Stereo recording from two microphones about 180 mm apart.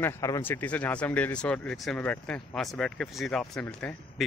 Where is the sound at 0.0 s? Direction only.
15° left (ahead or behind).